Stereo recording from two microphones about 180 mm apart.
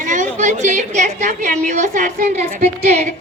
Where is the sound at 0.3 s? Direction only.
40° right (ahead or behind).